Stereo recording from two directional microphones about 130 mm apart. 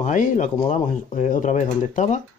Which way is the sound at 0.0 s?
75° left (ahead or behind).